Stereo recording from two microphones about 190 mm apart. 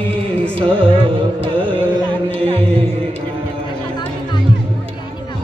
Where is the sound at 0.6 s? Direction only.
30° right (ahead or behind).